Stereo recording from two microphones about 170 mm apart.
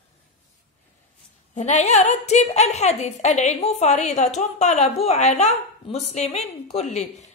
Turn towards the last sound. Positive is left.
turn(degrees=45)  # may be behind; listen again after turning